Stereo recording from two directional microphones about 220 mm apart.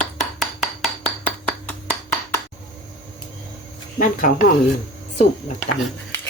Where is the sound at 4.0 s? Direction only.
40° left (ahead or behind).